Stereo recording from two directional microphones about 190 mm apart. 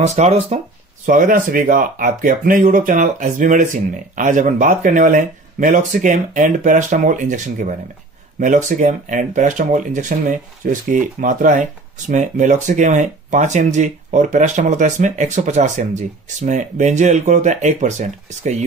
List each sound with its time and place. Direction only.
0.0 s speech: 35° right (ahead or behind)